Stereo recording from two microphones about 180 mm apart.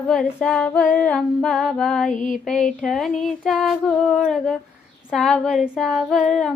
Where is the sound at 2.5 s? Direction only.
5° left (ahead or behind).